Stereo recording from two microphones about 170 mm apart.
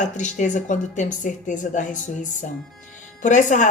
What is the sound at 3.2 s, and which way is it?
Speech, 45° left (ahead or behind).